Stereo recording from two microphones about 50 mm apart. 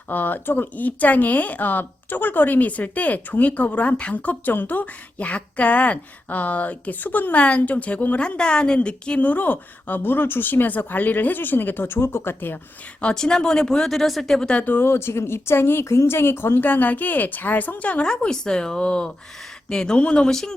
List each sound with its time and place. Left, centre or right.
0.1 s speech: left
8.4 s a woman's voice: centre
9.2 s a woman's voice: left
13.0 s speech: centre
14.6 s a woman's voice: left
18.0 s speech: centre